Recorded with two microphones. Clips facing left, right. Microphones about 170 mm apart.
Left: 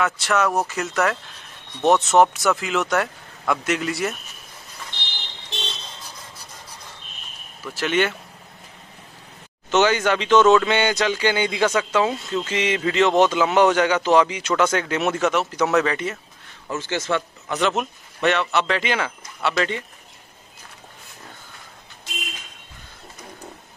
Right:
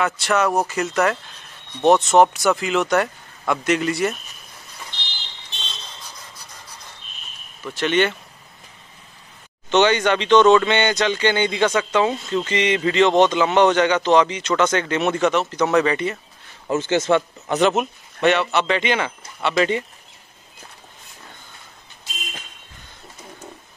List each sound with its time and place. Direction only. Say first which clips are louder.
0.0 s speech: right 1 dB; centre (ahead or behind)
7.6 s speech: right 2 dB; 5° left (ahead or behind)
9.7 s speech: right 2 dB; 5° left (ahead or behind)
16.6 s speech: right 7 dB; 20° right (ahead or behind)
17.7 s speech: right 3 dB; centre (ahead or behind)
19.5 s speech: right 6 dB; 15° right (ahead or behind)